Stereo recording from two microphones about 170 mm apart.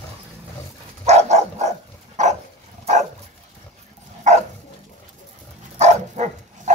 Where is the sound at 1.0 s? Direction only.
40° right (ahead or behind).